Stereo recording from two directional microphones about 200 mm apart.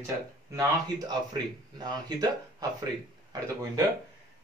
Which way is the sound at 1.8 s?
20° right (ahead or behind).